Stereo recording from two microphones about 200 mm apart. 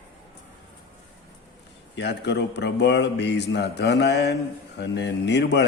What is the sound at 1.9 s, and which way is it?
A man's voice, 60° left (ahead or behind).